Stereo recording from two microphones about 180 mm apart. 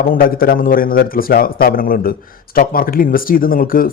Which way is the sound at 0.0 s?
55° left (ahead or behind).